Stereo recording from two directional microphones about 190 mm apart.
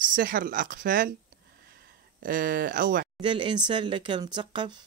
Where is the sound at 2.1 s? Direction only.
50° right (ahead or behind).